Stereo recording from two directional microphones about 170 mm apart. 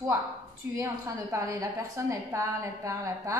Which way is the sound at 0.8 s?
20° right (ahead or behind).